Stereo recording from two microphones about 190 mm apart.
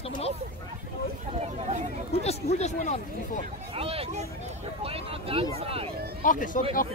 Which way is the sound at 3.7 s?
30° right (ahead or behind).